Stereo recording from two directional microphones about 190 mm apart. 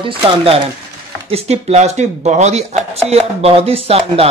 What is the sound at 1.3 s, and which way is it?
Speech, 35° right (ahead or behind).